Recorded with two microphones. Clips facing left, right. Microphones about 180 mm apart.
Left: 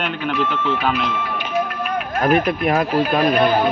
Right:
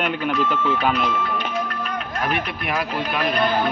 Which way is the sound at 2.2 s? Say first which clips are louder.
Left 10 dB; 45° left (ahead or behind).